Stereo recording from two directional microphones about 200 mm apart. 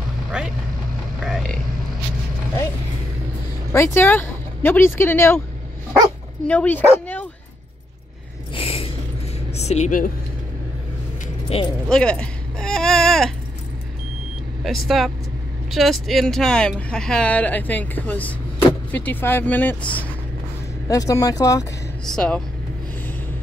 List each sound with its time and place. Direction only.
0.3 s vehicle: 5° right (ahead or behind)
1.2 s a sound: centre (ahead or behind)
3.7 s speech: 10° left (ahead or behind)
8.5 s a sound: 30° left (ahead or behind)
9.5 s speech: 35° left (ahead or behind)
11.9 s baby cry: 5° left (ahead or behind)
15.0 s speech: centre (ahead or behind); by 21.6 s 15° left (ahead or behind)
22.0 s speech: 5° left (ahead or behind)